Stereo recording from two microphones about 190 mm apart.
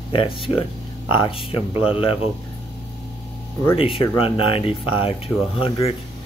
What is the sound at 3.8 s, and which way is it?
Speech, 30° left (ahead or behind).